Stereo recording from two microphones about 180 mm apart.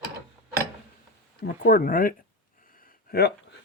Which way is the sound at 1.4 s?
50° left (ahead or behind).